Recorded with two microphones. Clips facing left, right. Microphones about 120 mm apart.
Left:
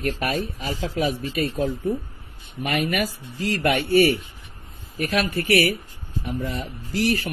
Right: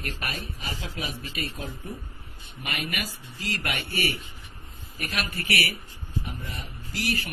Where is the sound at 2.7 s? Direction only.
60° left (ahead or behind).